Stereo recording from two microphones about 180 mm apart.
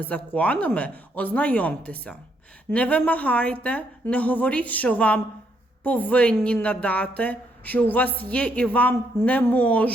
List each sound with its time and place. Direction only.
0.0 s a woman's voice: 5° left (ahead or behind)